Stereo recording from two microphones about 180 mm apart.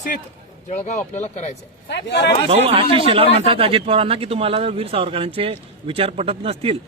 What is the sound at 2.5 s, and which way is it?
Speech, 35° right (ahead or behind).